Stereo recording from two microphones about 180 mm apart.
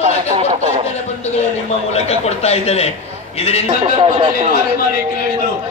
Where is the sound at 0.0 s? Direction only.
40° right (ahead or behind).